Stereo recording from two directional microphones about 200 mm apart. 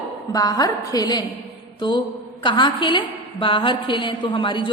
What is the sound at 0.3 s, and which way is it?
A woman's voice, 20° left (ahead or behind).